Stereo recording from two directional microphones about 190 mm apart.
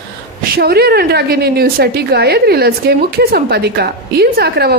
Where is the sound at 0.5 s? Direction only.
55° right (ahead or behind).